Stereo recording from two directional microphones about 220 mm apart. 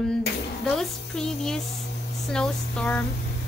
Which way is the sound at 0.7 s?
Centre (ahead or behind).